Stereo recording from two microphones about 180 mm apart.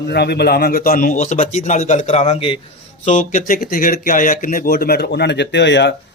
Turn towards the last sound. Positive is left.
turn(degrees=75)  # may be behind; listen again after turning